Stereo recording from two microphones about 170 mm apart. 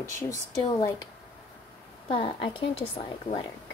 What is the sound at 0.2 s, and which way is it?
Speech, 20° left (ahead or behind).